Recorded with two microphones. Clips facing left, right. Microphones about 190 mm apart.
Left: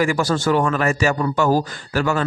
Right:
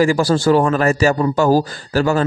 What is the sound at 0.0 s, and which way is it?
A man's voice, 35° right (ahead or behind).